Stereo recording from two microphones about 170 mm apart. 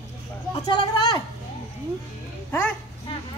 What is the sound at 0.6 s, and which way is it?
Speech, 25° left (ahead or behind).